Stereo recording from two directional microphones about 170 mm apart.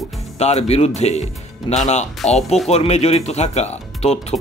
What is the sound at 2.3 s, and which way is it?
Speech, 40° left (ahead or behind).